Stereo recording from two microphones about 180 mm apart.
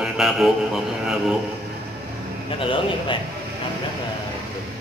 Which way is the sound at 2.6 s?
30° left (ahead or behind).